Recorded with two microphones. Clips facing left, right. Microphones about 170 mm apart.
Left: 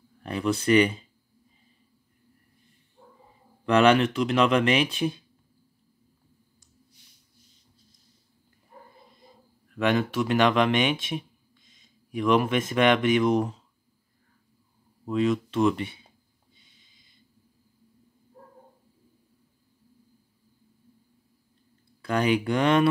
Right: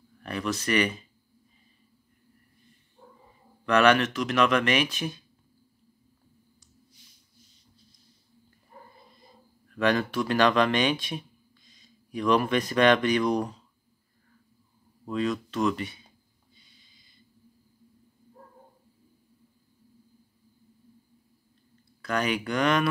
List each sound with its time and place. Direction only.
0.2 s speech: 20° left (ahead or behind)
3.6 s speech: 25° left (ahead or behind)
9.8 s speech: 20° left (ahead or behind)
15.0 s speech: 25° left (ahead or behind)
22.0 s speech: 25° left (ahead or behind)